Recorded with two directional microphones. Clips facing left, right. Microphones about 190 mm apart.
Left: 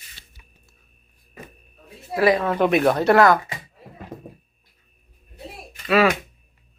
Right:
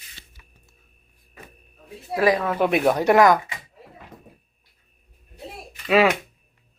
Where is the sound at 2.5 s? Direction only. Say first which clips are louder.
Left 2 dB; 10° right (ahead or behind).